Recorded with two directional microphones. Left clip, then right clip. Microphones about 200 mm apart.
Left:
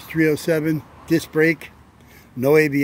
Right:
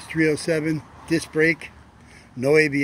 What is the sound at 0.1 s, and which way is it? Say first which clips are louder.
Speech: left 2 dB; 25° left (ahead or behind).